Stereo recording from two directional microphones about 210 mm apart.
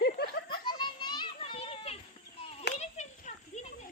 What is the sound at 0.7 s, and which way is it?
Children playing, 20° left (ahead or behind).